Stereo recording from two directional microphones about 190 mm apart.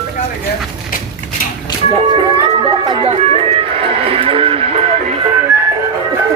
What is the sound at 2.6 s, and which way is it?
Music, 30° right (ahead or behind).